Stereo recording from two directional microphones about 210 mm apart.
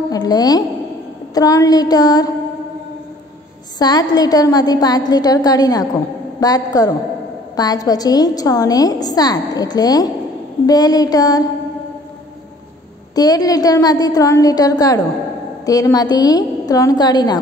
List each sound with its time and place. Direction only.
0.1 s a woman's voice: 20° left (ahead or behind)
3.7 s a woman's voice: 20° left (ahead or behind)
13.1 s a woman's voice: 20° left (ahead or behind)